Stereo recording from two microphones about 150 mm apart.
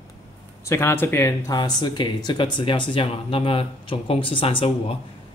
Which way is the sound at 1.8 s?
30° left (ahead or behind).